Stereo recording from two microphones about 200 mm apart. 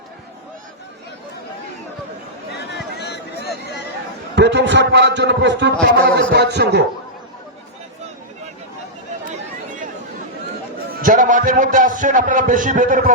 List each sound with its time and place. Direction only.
2.5 s a sound: 55° left (ahead or behind)
4.4 s a man's voice: 60° right (ahead or behind)
11.0 s a man's voice: 40° right (ahead or behind)